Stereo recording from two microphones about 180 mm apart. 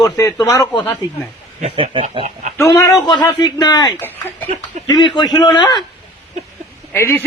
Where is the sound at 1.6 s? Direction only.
35° right (ahead or behind).